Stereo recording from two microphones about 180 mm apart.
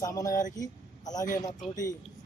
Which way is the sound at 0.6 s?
20° left (ahead or behind).